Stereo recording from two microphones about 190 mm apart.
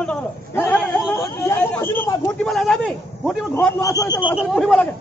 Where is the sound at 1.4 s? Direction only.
10° left (ahead or behind).